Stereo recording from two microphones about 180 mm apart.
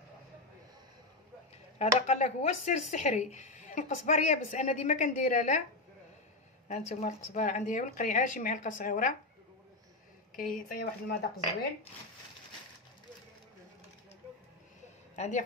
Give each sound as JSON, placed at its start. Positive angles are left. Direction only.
{"t": 1.8, "sound": "speech", "side_deg": 40}
{"t": 6.7, "sound": "speech", "side_deg": 40}
{"t": 10.3, "sound": "speech", "side_deg": 50}
{"t": 15.1, "sound": "a woman's voice", "side_deg": 40}